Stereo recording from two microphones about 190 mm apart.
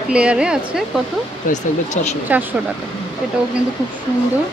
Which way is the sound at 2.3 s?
10° right (ahead or behind).